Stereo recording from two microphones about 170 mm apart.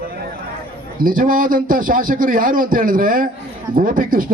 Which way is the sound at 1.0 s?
55° right (ahead or behind).